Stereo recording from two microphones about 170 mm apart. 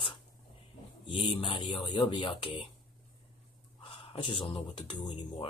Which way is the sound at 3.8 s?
30° left (ahead or behind).